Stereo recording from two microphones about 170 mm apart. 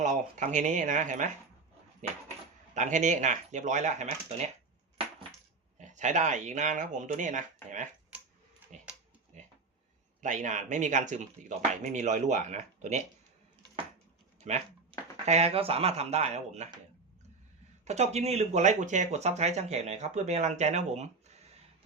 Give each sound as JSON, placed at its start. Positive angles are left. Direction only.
{"t": 0.0, "sound": "speech", "side_deg": -45}
{"t": 2.7, "sound": "speech", "side_deg": -45}
{"t": 5.8, "sound": "speech", "side_deg": -45}
{"t": 9.3, "sound": "a sound", "side_deg": -45}
{"t": 10.2, "sound": "speech", "side_deg": -45}
{"t": 14.4, "sound": "speech", "side_deg": -40}
{"t": 17.8, "sound": "speech", "side_deg": -40}